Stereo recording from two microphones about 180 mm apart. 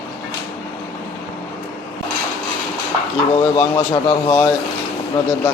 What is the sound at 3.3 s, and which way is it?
A man's voice, 25° left (ahead or behind).